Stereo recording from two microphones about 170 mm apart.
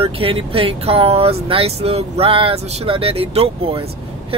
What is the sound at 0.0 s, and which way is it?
Speech, 30° right (ahead or behind).